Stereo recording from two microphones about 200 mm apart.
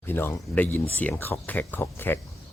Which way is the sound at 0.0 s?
10° left (ahead or behind).